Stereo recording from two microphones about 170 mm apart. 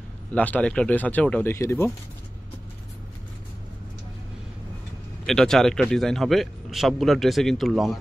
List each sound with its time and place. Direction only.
0.3 s speech: 10° left (ahead or behind)
5.2 s speech: 5° left (ahead or behind)